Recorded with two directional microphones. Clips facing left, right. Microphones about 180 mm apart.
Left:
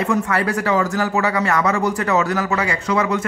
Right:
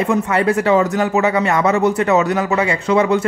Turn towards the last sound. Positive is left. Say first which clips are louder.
# right 5 dB
turn(degrees=-25)  # may be behind; listen again after turning